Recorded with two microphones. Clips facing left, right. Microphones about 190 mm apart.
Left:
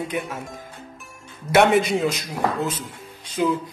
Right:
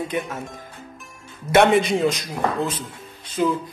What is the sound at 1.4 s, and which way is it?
A man's voice, 5° left (ahead or behind).